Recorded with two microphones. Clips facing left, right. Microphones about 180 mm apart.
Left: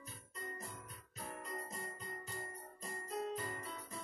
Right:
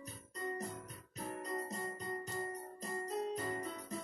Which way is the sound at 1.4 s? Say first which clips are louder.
Right 7 dB; 40° right (ahead or behind).